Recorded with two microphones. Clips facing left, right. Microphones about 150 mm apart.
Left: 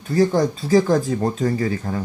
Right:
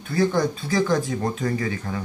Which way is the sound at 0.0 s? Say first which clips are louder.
Left 4 dB; 40° left (ahead or behind).